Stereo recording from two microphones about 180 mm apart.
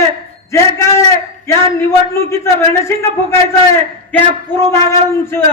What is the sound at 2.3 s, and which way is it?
A man's voice, 15° left (ahead or behind).